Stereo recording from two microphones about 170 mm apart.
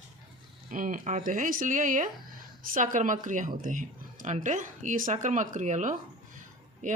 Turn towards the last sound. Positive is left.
turn(degrees=-50)  # may be behind; listen again after turning